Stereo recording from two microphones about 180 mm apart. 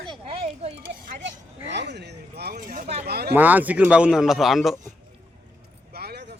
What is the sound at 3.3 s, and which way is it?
A man's voice, 10° right (ahead or behind).